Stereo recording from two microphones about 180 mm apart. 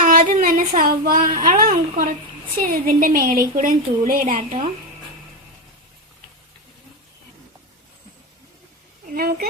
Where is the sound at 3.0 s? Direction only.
50° right (ahead or behind).